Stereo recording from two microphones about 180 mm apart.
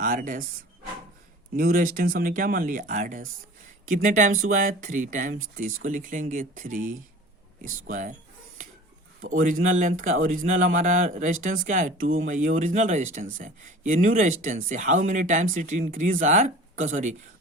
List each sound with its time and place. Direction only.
0.0 s speech: 50° right (ahead or behind)
1.5 s speech: 55° right (ahead or behind)
9.4 s speech: 45° right (ahead or behind)